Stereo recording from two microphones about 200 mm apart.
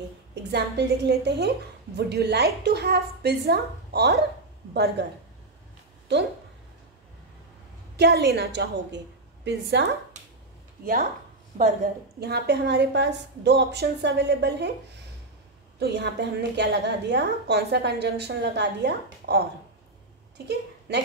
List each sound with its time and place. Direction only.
0.3 s a woman's voice: 55° right (ahead or behind)
8.0 s a woman's voice: 55° right (ahead or behind)
11.5 s a woman's voice: 40° right (ahead or behind); by 14.7 s 60° right (ahead or behind)
15.8 s a woman's voice: 60° right (ahead or behind)